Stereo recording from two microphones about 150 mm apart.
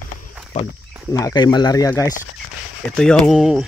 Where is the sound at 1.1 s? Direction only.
25° left (ahead or behind).